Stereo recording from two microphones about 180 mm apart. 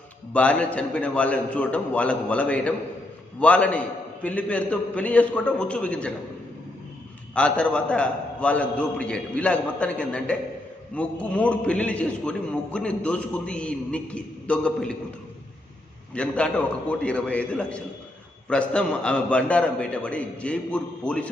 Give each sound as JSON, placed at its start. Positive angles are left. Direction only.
{"t": 0.3, "sound": "a man's voice", "side_deg": 5}
{"t": 7.3, "sound": "a man's voice", "side_deg": 5}
{"t": 16.1, "sound": "a man's voice", "side_deg": 5}